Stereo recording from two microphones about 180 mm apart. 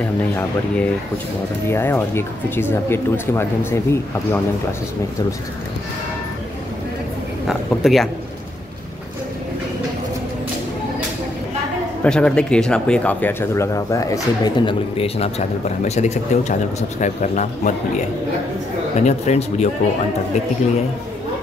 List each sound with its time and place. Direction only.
0.4 s speech: 10° left (ahead or behind)
7.4 s speech: centre (ahead or behind)
12.0 s speech: 5° left (ahead or behind); by 17.7 s 45° left (ahead or behind)
18.9 s speech: 40° left (ahead or behind)